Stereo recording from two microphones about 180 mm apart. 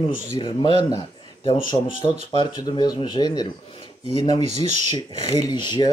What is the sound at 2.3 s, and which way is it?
Speech, 25° left (ahead or behind).